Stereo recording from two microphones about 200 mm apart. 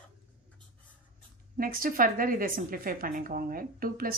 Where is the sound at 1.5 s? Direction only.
45° right (ahead or behind).